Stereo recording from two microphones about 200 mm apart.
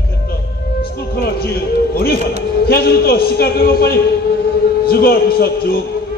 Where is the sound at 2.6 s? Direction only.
50° left (ahead or behind).